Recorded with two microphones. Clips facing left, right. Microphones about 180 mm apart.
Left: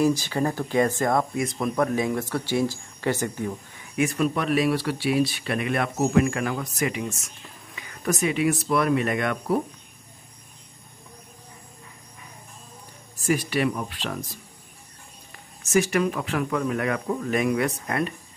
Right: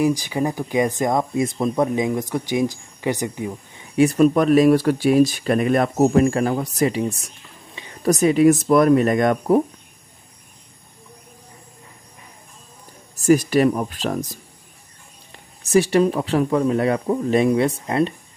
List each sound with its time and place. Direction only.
0.0 s speech: 15° right (ahead or behind)
3.9 s speech: 35° right (ahead or behind)
13.2 s speech: 40° right (ahead or behind)
15.3 s speech: 30° right (ahead or behind)